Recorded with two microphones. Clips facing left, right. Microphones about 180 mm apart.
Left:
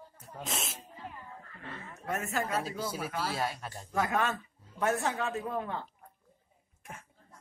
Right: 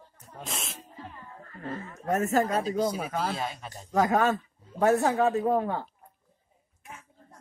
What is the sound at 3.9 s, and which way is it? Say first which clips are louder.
Speech: right 7 dB; 40° right (ahead or behind).